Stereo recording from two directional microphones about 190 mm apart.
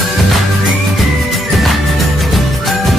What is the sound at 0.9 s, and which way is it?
Music, centre (ahead or behind).